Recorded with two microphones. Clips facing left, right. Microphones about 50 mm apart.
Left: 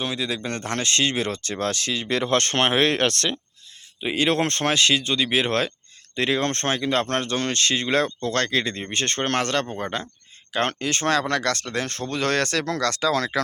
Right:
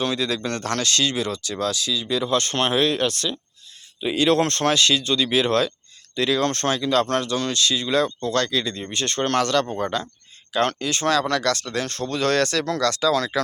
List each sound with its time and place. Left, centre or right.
0.0 s speech: centre; by 3.3 s left
4.0 s speech: left